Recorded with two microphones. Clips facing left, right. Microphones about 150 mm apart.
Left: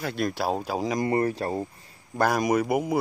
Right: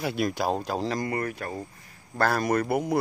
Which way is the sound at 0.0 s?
5° right (ahead or behind).